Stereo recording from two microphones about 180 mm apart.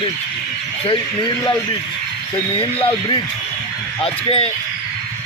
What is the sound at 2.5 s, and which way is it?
Speech, 30° left (ahead or behind).